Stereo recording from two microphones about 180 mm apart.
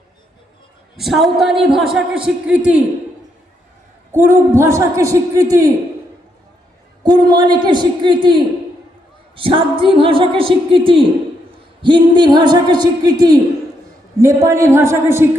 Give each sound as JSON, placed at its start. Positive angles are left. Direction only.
{"t": 0.9, "sound": "a man's voice", "side_deg": 0}
{"t": 4.1, "sound": "a man's voice", "side_deg": -15}
{"t": 7.0, "sound": "a woman's voice", "side_deg": -25}